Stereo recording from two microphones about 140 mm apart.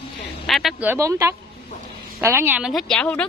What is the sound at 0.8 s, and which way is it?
A woman's voice, 20° right (ahead or behind).